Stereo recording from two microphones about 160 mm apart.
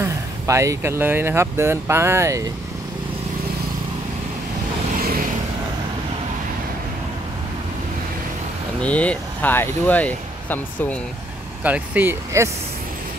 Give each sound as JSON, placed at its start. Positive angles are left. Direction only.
{"t": 0.0, "sound": "speech", "side_deg": -20}
{"t": 4.9, "sound": "vehicle", "side_deg": -60}
{"t": 8.8, "sound": "speech", "side_deg": 10}
{"t": 11.6, "sound": "speech", "side_deg": -10}